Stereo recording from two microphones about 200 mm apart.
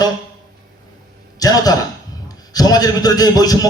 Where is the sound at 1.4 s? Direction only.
20° left (ahead or behind).